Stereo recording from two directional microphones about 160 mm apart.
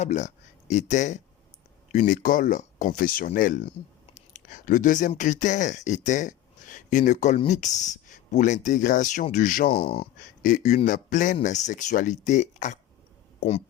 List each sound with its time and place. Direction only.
0.0 s speech: 45° left (ahead or behind)
9.6 s speech: 40° left (ahead or behind)
10.4 s speech: 50° left (ahead or behind)